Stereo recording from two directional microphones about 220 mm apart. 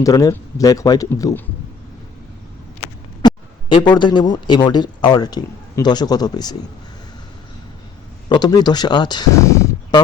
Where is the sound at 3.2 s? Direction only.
20° left (ahead or behind).